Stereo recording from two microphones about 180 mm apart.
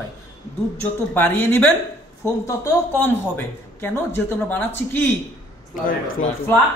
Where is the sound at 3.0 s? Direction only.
10° left (ahead or behind).